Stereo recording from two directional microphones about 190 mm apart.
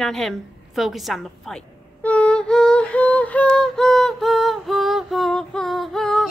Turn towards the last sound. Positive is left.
turn(degrees=0)  # may be behind; listen again after turning